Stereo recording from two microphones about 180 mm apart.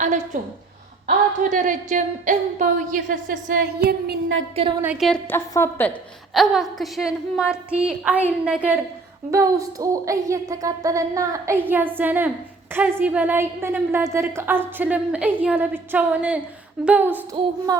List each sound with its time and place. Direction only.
1.0 s a woman's voice: 45° right (ahead or behind); by 4.4 s 80° right
4.8 s a woman's voice: 5° right (ahead or behind); by 5.9 s 15° left (ahead or behind)
6.3 s a woman's voice: centre (ahead or behind)
9.3 s a woman's voice: 20° right (ahead or behind)
17.7 s speech: 20° right (ahead or behind)